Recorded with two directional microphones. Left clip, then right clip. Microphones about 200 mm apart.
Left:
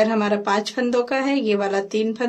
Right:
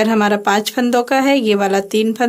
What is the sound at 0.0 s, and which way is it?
Speech, 45° right (ahead or behind).